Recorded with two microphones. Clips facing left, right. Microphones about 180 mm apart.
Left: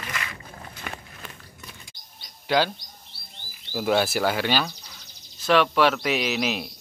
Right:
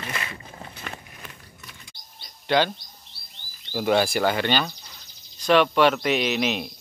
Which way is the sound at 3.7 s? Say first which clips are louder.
Right 1 dB; 5° left (ahead or behind).